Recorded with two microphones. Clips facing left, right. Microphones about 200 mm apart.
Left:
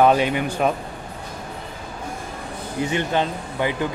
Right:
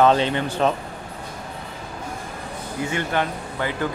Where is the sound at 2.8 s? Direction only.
20° left (ahead or behind).